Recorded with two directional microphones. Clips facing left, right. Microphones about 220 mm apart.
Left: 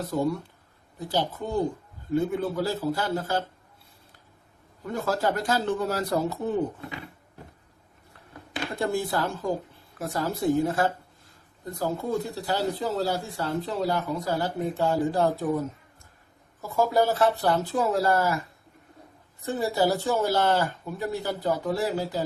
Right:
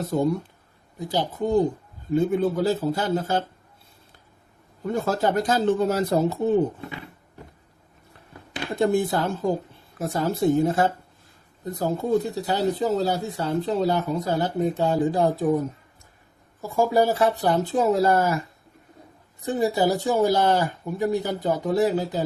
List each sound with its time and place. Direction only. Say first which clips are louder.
0.1 s speech: right 4 dB; 20° right (ahead or behind)
4.9 s speech: right 3 dB; 25° right (ahead or behind)
8.8 s speech: right 6 dB; 20° right (ahead or behind)
16.6 s speech: right 3 dB; 10° right (ahead or behind)
19.5 s speech: right 3 dB; 20° right (ahead or behind)